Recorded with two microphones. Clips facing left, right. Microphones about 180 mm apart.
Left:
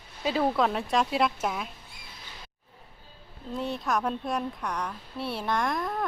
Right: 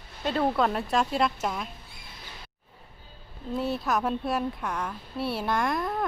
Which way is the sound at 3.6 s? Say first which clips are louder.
Right 2 dB; 5° right (ahead or behind).